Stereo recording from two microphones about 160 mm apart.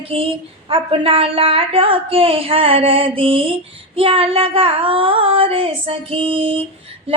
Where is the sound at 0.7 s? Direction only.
35° right (ahead or behind).